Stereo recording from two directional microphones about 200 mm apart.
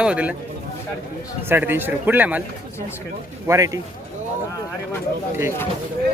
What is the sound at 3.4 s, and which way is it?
Speech, 15° right (ahead or behind).